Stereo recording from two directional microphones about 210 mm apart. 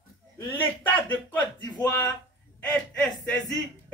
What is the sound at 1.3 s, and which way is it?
Speech, 10° left (ahead or behind).